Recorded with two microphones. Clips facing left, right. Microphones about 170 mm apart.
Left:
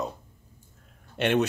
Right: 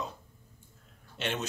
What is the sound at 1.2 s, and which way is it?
Speech, 60° left (ahead or behind).